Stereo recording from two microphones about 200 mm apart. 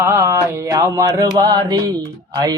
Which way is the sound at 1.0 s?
15° right (ahead or behind).